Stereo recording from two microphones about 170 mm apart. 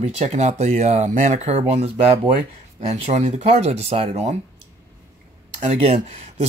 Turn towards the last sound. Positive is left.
turn(degrees=-40)  # may be behind; listen again after turning